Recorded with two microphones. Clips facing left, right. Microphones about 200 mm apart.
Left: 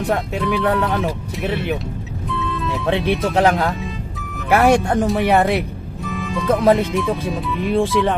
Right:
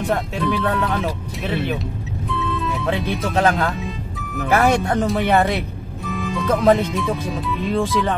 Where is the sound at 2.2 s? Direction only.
Centre (ahead or behind).